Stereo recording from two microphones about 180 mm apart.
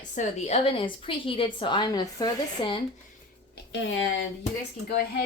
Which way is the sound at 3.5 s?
90° left.